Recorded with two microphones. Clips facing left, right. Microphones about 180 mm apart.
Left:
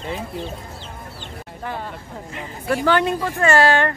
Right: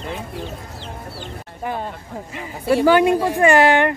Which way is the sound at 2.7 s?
10° right (ahead or behind).